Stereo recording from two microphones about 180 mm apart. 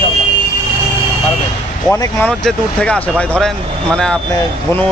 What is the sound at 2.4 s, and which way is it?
Speech, 5° left (ahead or behind).